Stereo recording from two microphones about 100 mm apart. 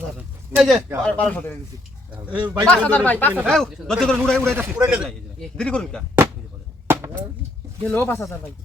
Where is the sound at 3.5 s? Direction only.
5° left (ahead or behind).